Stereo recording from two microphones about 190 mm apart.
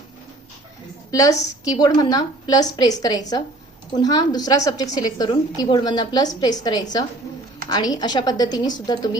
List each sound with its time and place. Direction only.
1.1 s a woman's voice: 20° left (ahead or behind)